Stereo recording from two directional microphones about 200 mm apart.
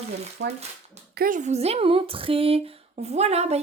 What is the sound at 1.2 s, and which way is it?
A woman's voice, 40° right (ahead or behind).